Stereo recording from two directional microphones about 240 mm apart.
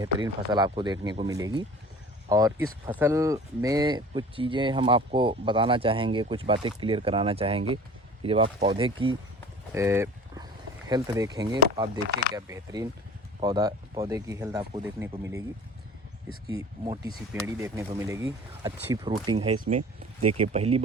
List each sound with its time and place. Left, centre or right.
0.0 s speech: centre
9.7 s speech: centre
16.8 s speech: centre